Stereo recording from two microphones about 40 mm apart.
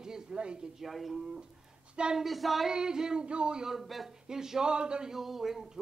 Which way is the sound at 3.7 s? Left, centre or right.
Centre.